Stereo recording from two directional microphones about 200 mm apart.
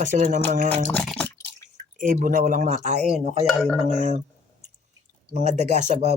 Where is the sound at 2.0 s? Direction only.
40° right (ahead or behind).